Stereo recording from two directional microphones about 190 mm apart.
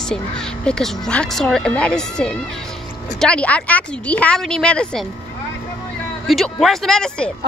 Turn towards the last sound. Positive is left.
turn(degrees=5)  # may be behind; listen again after turning